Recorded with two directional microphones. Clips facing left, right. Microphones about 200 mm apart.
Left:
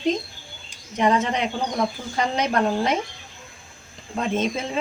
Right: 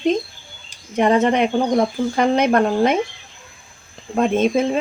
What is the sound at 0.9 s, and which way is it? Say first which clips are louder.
Speech: right 6 dB; 55° right (ahead or behind).